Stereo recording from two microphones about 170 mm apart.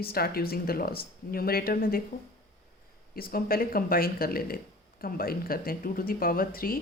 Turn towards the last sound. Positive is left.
turn(degrees=60)  # may be behind; listen again after turning